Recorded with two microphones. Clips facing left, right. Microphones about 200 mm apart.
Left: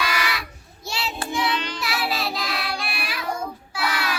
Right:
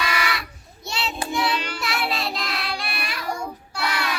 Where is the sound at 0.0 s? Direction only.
Centre (ahead or behind).